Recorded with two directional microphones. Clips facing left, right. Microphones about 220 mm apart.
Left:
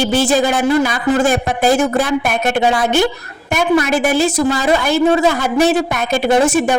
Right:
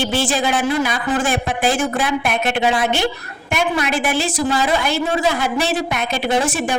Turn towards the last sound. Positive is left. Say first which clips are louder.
# left 6 dB
turn(degrees=45)  # may be behind; listen again after turning